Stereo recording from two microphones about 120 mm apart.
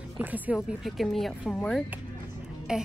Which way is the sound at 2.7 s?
5° right (ahead or behind).